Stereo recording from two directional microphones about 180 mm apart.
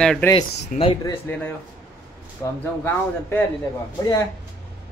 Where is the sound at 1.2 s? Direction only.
10° left (ahead or behind).